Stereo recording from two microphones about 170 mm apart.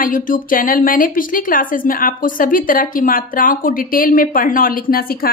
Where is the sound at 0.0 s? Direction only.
55° left (ahead or behind).